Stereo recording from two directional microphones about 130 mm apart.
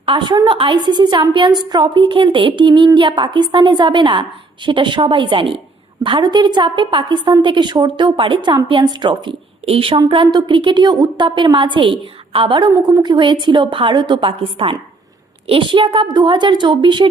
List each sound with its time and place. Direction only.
0.0 s a woman's voice: 40° right (ahead or behind)